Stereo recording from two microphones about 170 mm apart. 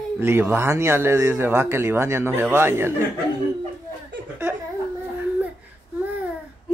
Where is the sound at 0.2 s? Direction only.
10° right (ahead or behind).